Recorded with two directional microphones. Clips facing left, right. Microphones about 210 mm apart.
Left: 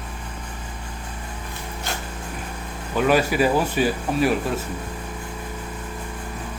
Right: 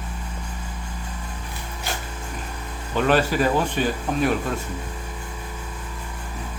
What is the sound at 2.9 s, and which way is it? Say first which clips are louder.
Speech: left 1 dB; 10° left (ahead or behind).